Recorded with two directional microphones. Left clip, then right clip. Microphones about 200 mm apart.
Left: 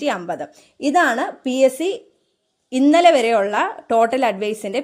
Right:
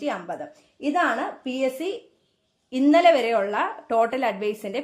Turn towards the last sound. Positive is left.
turn(degrees=30)  # may be behind; listen again after turning